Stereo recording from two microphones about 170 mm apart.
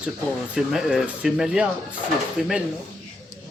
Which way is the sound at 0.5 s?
5° right (ahead or behind).